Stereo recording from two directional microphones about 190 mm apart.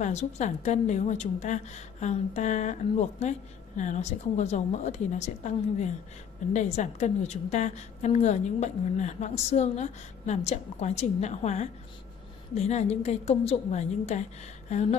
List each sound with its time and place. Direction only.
0.0 s a woman's voice: 35° left (ahead or behind)